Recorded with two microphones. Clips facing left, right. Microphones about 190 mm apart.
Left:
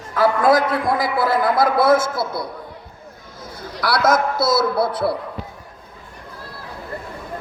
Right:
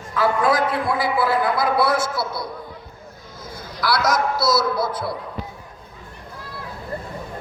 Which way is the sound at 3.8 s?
60° left (ahead or behind).